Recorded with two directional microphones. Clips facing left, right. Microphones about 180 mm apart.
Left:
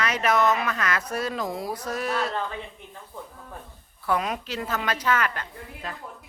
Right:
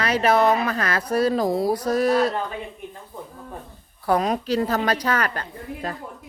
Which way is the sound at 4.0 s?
40° right (ahead or behind).